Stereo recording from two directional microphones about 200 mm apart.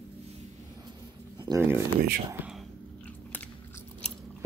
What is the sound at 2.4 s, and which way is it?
Speech, 10° right (ahead or behind).